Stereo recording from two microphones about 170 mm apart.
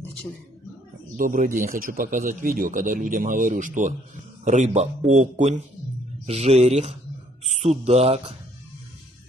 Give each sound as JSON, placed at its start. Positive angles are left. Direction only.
{"t": 1.1, "sound": "a man's voice", "side_deg": -50}